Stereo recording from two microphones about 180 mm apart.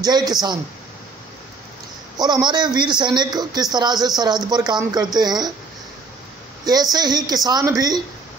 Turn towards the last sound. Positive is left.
turn(degrees=-20)  # may be behind; listen again after turning